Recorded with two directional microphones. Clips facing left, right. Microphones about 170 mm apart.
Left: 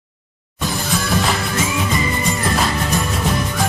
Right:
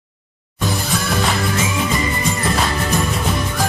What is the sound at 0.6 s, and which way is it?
Music, centre (ahead or behind).